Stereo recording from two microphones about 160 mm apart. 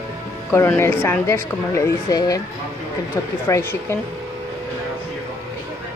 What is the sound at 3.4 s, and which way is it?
Speech, 20° left (ahead or behind).